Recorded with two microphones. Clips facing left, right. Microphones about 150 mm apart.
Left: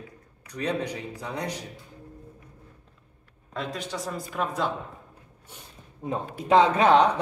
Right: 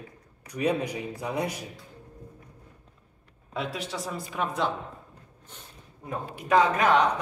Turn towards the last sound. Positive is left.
turn(degrees=30)  # may be behind; listen again after turning